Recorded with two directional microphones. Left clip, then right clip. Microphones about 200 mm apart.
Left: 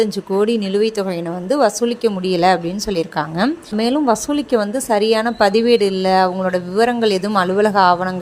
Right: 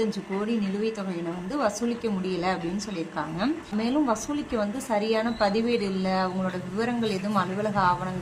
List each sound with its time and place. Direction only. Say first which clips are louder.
0.0 s a woman's voice: left 12 dB; 40° left (ahead or behind)